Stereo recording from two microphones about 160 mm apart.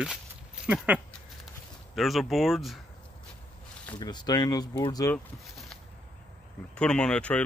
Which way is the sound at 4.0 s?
25° left (ahead or behind).